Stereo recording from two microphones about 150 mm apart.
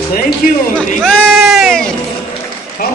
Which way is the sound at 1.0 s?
Centre (ahead or behind).